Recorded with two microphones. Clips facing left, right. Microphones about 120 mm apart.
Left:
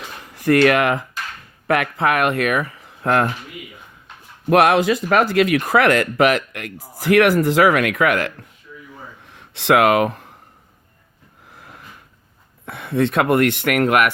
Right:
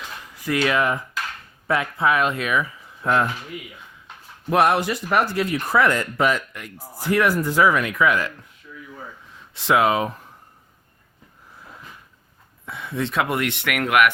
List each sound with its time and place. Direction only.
0.0 s a sound: 55° left (ahead or behind); by 1.0 s 80° left
1.6 s speech: 70° left (ahead or behind)
4.4 s speech: 75° left (ahead or behind)
12.6 s speech: 60° left (ahead or behind); by 14.1 s 40° left (ahead or behind)